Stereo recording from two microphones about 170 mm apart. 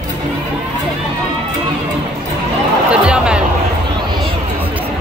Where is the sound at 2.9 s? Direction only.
5° right (ahead or behind).